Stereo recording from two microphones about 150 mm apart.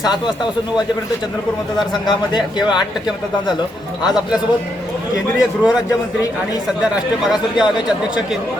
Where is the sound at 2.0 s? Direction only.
30° left (ahead or behind).